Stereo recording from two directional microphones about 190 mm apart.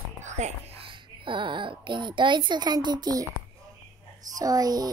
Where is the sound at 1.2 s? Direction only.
25° right (ahead or behind).